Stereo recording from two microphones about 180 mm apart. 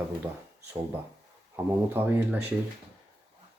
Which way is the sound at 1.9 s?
10° right (ahead or behind).